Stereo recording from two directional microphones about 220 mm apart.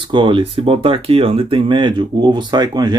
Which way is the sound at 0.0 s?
20° right (ahead or behind).